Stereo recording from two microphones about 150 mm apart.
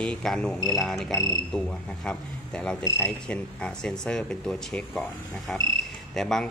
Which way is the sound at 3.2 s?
5° left (ahead or behind).